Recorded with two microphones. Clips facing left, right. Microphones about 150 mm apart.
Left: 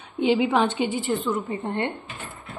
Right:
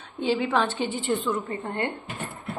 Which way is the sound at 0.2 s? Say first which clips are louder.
Left 4 dB; 15° left (ahead or behind).